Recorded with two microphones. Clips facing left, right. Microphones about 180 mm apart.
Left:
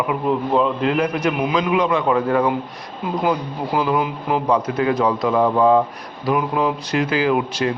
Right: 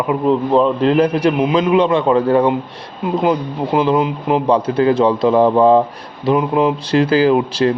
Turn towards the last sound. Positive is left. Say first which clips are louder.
# right 5 dB
turn(degrees=-35)  # may be behind; listen again after turning